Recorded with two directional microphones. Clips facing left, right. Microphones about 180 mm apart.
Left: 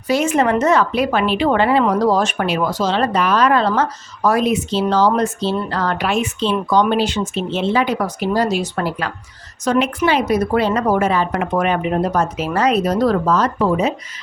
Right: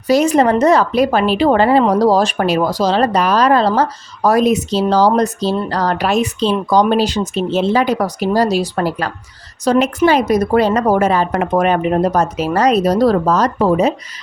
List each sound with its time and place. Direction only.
0.1 s speech: 35° right (ahead or behind)